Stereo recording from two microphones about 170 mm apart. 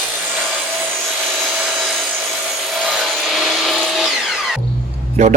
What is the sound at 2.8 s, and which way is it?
Music, centre (ahead or behind).